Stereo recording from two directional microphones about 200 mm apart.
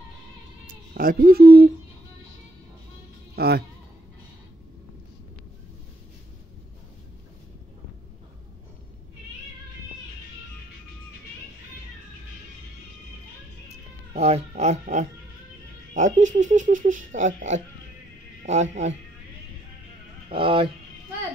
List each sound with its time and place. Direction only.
0.7 s speech: 45° right (ahead or behind)
3.3 s speech: 50° right (ahead or behind)
13.7 s cat: 35° right (ahead or behind)
15.9 s speech: 40° right (ahead or behind)
20.2 s speech: 25° right (ahead or behind)